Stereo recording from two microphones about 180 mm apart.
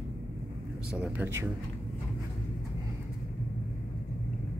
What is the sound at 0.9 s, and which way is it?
Speech, 15° right (ahead or behind).